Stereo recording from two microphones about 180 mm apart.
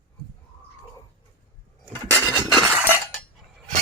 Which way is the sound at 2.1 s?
15° right (ahead or behind).